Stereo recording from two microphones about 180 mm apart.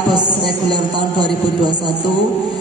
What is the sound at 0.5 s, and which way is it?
A man's voice, 25° right (ahead or behind).